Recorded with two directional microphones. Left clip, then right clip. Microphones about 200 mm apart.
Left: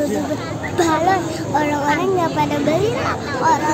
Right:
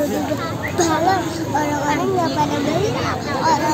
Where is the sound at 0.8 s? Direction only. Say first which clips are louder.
Left 1 dB; 10° left (ahead or behind).